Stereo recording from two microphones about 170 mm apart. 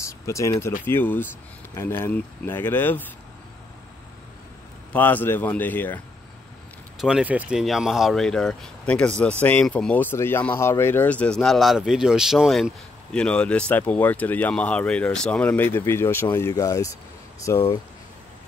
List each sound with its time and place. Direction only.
0.0 s speech: 15° left (ahead or behind)
4.9 s speech: 10° left (ahead or behind)
7.0 s speech: 5° right (ahead or behind); by 17.7 s 15° left (ahead or behind)